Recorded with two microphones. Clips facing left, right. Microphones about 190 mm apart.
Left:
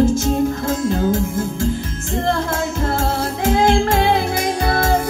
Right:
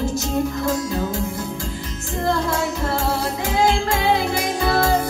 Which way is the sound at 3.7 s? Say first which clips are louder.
Left 4 dB; 55° left (ahead or behind).